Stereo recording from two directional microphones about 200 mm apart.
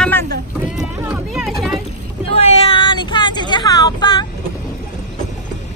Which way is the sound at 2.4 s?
30° left (ahead or behind).